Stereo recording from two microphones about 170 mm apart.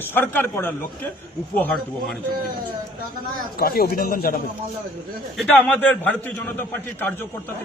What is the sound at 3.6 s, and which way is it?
Speech, 60° left (ahead or behind).